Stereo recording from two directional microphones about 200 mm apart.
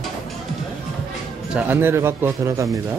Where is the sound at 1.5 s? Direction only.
10° right (ahead or behind).